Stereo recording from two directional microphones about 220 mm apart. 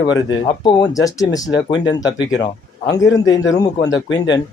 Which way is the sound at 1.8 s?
55° left (ahead or behind).